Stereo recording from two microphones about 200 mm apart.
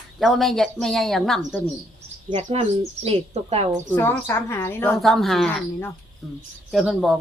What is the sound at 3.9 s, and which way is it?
A woman's voice, 10° left (ahead or behind).